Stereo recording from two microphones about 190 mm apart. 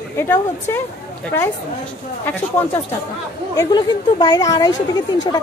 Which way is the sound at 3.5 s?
20° left (ahead or behind).